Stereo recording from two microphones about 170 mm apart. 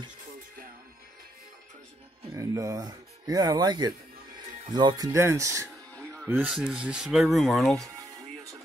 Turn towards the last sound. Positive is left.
turn(degrees=0)  # may be behind; listen again after turning